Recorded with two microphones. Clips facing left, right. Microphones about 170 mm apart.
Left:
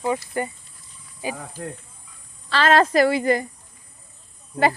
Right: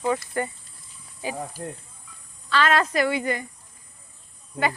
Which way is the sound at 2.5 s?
30° left (ahead or behind).